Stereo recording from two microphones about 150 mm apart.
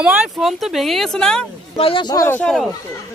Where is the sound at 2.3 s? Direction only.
Centre (ahead or behind).